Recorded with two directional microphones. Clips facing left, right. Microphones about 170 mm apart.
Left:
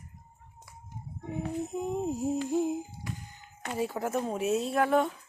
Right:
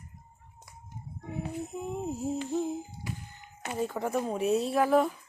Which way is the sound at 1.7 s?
20° left (ahead or behind).